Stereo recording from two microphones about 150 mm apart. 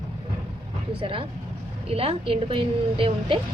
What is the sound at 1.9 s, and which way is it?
A woman's voice, 40° right (ahead or behind).